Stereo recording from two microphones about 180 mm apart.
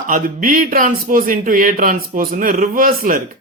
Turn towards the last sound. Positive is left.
turn(degrees=-50)  # may be behind; listen again after turning